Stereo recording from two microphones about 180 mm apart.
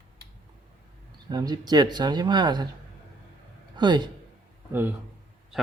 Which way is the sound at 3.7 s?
25° right (ahead or behind).